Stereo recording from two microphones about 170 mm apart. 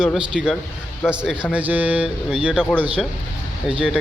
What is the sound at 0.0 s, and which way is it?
Speech, 5° right (ahead or behind).